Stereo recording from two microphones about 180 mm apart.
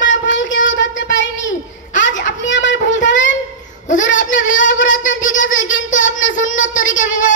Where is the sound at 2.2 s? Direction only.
80° left.